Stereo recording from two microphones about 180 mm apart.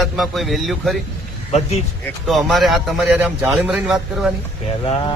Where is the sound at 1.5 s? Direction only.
35° left (ahead or behind).